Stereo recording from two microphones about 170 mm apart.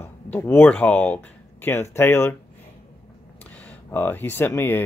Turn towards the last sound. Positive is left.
turn(degrees=10)  # may be behind; listen again after turning